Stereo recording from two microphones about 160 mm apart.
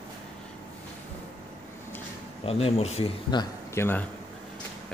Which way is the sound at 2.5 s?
40° left (ahead or behind).